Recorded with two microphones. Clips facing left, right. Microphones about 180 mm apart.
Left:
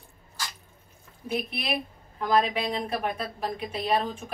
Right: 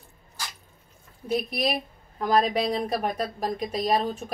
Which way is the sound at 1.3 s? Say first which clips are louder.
Right 4 dB; 40° right (ahead or behind).